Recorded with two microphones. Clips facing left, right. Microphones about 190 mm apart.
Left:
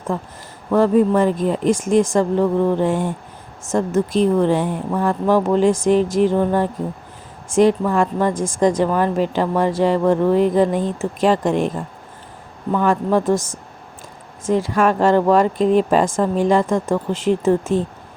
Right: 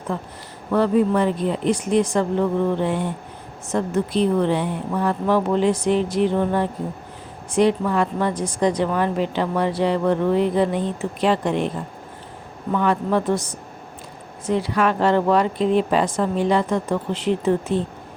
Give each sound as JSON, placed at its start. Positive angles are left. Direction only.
{"t": 0.1, "sound": "a woman's voice", "side_deg": 40}
{"t": 12.7, "sound": "a woman's voice", "side_deg": 40}